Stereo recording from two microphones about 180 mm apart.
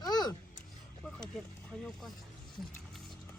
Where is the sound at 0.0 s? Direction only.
20° left (ahead or behind).